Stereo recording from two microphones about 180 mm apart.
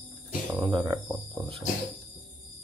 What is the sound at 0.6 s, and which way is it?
Speech, 25° right (ahead or behind).